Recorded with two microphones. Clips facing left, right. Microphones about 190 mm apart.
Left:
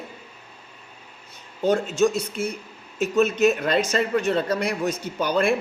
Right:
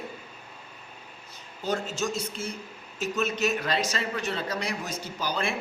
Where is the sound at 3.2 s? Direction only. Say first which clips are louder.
Left 9 dB; 55° left (ahead or behind).